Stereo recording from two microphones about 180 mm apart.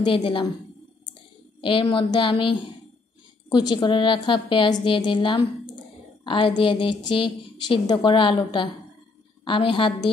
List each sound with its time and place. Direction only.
0.0 s a woman's voice: 30° left (ahead or behind)
1.6 s a woman's voice: 30° left (ahead or behind)